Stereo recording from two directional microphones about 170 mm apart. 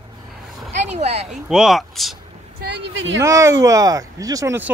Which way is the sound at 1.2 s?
5° right (ahead or behind).